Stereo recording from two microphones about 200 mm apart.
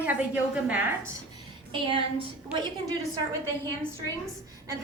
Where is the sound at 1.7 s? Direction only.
25° right (ahead or behind).